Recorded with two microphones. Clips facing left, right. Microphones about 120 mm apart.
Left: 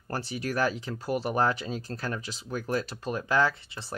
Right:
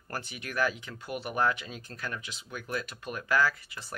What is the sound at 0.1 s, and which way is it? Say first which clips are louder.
Speech: left 6 dB; 35° left (ahead or behind).